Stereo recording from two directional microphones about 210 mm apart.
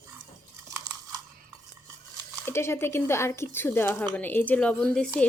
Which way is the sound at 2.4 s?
10° left (ahead or behind).